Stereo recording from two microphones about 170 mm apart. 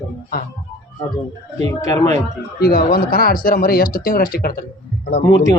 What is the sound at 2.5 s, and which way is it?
Speech, 65° left (ahead or behind).